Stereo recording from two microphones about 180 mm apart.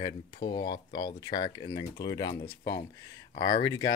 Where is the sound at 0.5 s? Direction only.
25° left (ahead or behind).